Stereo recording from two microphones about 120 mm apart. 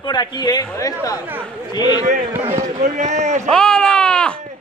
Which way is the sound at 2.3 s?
20° right (ahead or behind).